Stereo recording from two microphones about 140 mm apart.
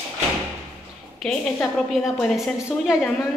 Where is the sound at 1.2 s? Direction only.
5° left (ahead or behind).